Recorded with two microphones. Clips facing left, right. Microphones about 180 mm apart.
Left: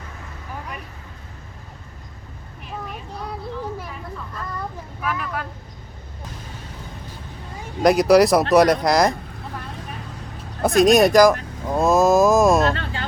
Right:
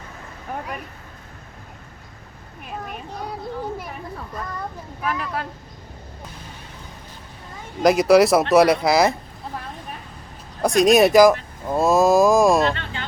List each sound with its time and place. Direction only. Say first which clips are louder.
5.0 s vehicle: right 1 dB; 30° right (ahead or behind)
7.8 s speech: even; centre (ahead or behind)
10.6 s vehicle: even; centre (ahead or behind)
12.7 s music: left 3 dB; 40° left (ahead or behind)